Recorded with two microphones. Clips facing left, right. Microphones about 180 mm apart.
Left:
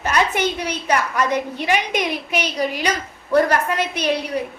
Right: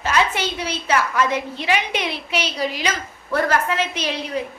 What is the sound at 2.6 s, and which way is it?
A woman's voice, 45° left (ahead or behind).